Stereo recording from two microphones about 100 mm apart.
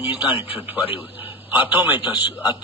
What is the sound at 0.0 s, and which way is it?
Speech, 20° right (ahead or behind).